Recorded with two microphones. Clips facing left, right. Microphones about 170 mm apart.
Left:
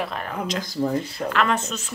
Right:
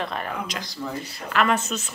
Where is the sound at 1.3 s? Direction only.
10° right (ahead or behind).